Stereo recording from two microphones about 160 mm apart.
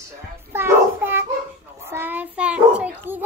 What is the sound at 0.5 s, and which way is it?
Child singing, 15° right (ahead or behind).